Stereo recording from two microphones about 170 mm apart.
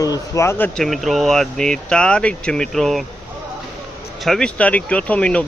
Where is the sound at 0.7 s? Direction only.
Centre (ahead or behind).